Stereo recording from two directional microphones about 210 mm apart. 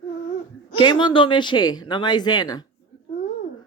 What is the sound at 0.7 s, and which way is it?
Speech, 20° left (ahead or behind).